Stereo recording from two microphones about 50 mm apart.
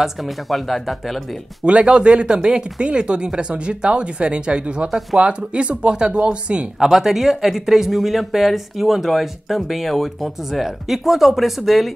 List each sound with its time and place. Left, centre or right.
0.0 s speech: centre
1.6 s speech: right
4.8 s speech: centre
5.2 s speech: right
6.8 s speech: centre